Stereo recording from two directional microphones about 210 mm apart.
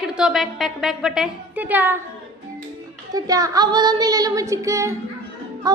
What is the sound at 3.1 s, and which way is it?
Child singing, 15° right (ahead or behind).